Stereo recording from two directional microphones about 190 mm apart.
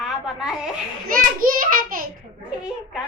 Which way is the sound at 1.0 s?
50° right (ahead or behind).